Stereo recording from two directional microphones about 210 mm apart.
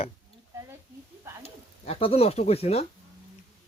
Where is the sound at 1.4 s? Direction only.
30° left (ahead or behind).